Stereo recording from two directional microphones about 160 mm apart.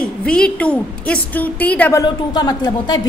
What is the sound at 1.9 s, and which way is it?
Speech, 25° left (ahead or behind).